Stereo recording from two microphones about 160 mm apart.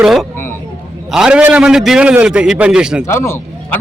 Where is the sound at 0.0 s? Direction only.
5° right (ahead or behind).